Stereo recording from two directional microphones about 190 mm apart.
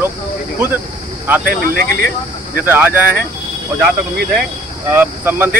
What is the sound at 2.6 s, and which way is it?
Speech, 10° right (ahead or behind).